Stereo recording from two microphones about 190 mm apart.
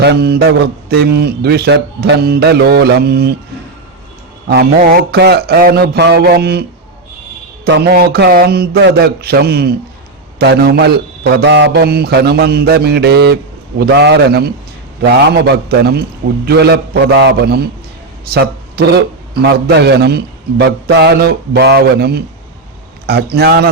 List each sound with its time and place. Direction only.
0.0 s a man's voice: 60° right (ahead or behind)
4.9 s a man's voice: 60° right (ahead or behind)